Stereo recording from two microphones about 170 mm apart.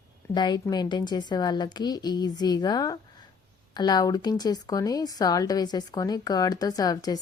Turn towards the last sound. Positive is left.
turn(degrees=20)  # may be behind; listen again after turning